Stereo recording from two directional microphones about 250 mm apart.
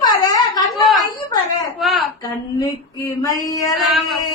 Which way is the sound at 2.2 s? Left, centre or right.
Centre.